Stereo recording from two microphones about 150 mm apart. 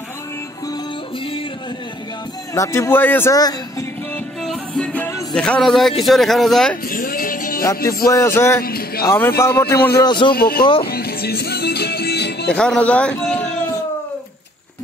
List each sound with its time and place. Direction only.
2.5 s a man's voice: 20° left (ahead or behind)
4.4 s speech: 5° left (ahead or behind)
6.9 s music: 70° left (ahead or behind)
8.1 s a man's voice: 20° left (ahead or behind)
8.6 s music: 90° left
9.0 s a man's voice: 15° left (ahead or behind)
10.0 s a man's voice: 30° left (ahead or behind)
10.3 s speech: 90° left
10.8 s music: 90° left
12.4 s a man's voice: 5° left (ahead or behind)